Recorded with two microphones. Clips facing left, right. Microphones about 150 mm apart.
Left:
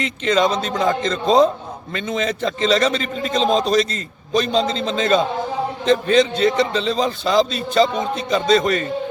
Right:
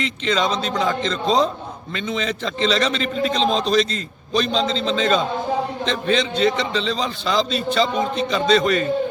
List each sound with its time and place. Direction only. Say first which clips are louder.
0.0 s a man's voice: left 3 dB; 45° left (ahead or behind)